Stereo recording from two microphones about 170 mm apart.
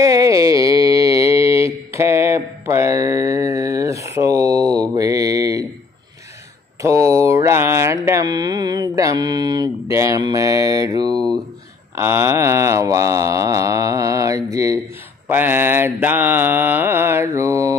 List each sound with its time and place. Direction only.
0.0 s mantra: 20° right (ahead or behind)
6.8 s mantra: 20° right (ahead or behind)